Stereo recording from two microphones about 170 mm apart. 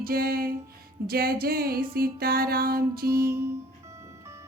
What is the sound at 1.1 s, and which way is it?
Music, 60° right (ahead or behind).